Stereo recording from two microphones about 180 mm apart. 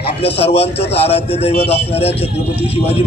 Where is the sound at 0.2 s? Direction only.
35° left (ahead or behind).